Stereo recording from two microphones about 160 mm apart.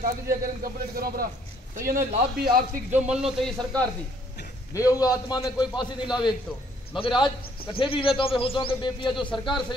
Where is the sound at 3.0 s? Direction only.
5° right (ahead or behind).